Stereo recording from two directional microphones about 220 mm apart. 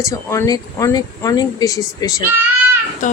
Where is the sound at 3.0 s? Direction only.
35° left (ahead or behind).